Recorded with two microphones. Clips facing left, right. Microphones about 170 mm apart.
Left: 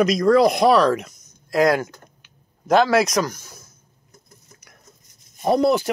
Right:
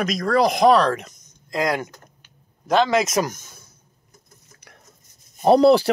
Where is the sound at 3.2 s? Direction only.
20° right (ahead or behind).